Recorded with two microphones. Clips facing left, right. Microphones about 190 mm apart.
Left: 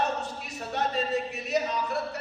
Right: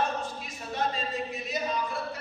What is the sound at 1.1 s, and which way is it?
Speech, 70° left (ahead or behind).